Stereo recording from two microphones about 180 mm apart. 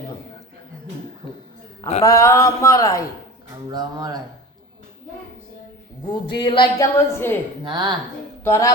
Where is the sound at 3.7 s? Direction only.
20° right (ahead or behind).